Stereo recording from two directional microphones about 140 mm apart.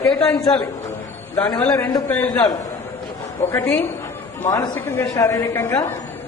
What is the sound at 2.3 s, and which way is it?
Speech, 25° left (ahead or behind).